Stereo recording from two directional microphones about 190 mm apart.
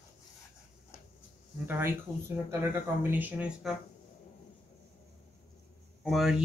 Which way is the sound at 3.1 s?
10° right (ahead or behind).